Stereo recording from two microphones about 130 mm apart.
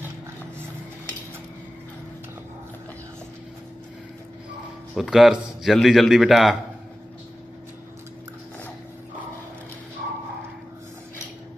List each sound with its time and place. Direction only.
4.9 s a man's voice: centre (ahead or behind)